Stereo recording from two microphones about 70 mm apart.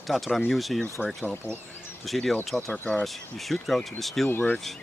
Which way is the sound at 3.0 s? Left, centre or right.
Centre.